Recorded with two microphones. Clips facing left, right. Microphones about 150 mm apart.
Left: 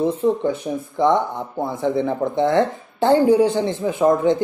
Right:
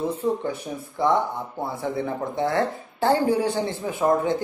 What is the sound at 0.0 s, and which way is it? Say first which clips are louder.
Speech: left 6 dB; 20° left (ahead or behind).